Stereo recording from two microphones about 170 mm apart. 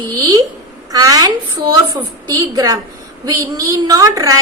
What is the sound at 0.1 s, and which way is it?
A woman's voice, 20° right (ahead or behind).